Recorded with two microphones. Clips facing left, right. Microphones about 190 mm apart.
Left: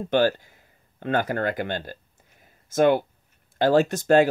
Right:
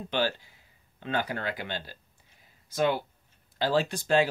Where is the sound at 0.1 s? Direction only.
45° left (ahead or behind).